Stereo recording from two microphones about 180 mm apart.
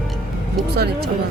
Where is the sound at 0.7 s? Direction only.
60° right (ahead or behind).